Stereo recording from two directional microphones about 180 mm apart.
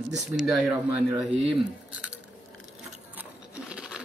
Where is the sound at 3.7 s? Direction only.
5° right (ahead or behind).